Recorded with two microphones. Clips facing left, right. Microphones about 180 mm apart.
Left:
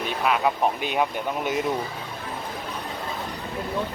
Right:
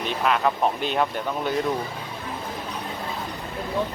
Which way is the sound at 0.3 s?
5° left (ahead or behind).